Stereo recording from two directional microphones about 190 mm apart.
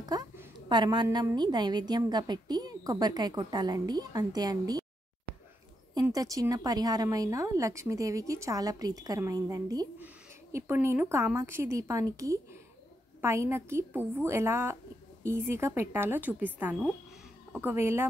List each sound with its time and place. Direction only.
0.0 s a woman's voice: 20° right (ahead or behind)
5.9 s a woman's voice: 20° right (ahead or behind)